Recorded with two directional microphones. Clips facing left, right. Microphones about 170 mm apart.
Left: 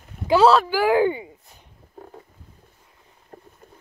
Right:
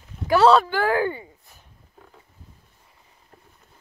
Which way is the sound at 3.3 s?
50° left (ahead or behind).